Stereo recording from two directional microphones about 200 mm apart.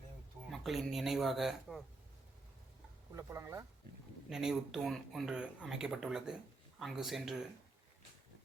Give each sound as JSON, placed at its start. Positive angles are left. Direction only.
{"t": 0.5, "sound": "speech", "side_deg": 0}
{"t": 3.2, "sound": "speech", "side_deg": -20}
{"t": 4.3, "sound": "speech", "side_deg": 0}